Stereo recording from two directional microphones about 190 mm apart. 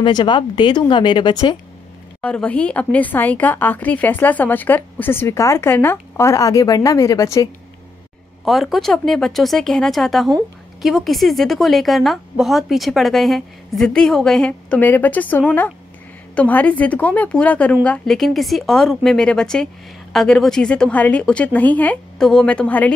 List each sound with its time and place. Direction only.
0.0 s speech: 25° left (ahead or behind)
2.2 s speech: 5° left (ahead or behind)
8.5 s a woman's voice: centre (ahead or behind)